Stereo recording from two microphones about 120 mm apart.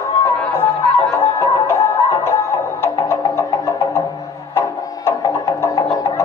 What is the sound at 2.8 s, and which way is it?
Music, 25° left (ahead or behind).